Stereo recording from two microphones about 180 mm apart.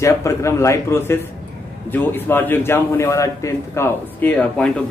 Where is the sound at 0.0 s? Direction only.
15° left (ahead or behind).